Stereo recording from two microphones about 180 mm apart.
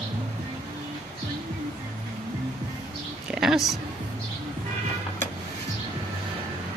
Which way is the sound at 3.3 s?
Centre (ahead or behind).